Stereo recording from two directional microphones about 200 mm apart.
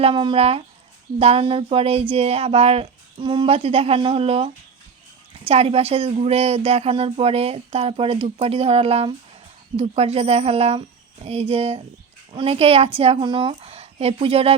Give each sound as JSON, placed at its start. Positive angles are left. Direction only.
{"t": 0.0, "sound": "speech", "side_deg": -25}
{"t": 5.5, "sound": "speech", "side_deg": -30}